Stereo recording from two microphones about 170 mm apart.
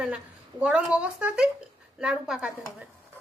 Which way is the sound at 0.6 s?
5° right (ahead or behind).